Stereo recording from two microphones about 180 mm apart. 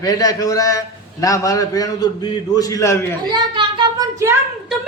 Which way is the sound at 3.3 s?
25° right (ahead or behind).